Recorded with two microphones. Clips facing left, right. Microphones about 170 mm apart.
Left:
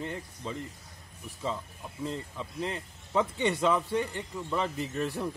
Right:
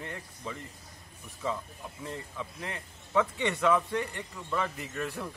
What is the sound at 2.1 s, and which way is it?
Speech, 30° left (ahead or behind).